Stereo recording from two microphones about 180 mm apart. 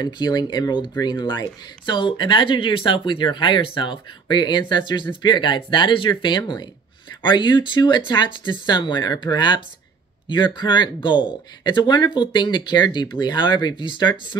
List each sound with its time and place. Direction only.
0.0 s speech: 20° left (ahead or behind)